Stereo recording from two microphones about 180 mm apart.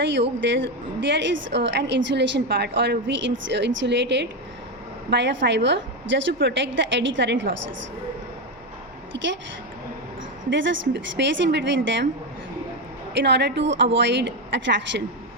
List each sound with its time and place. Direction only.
0.0 s a woman's voice: 90° right
9.1 s a woman's voice: 70° right (ahead or behind)
10.5 s a woman's voice: 90° right
13.1 s a woman's voice: 75° right (ahead or behind)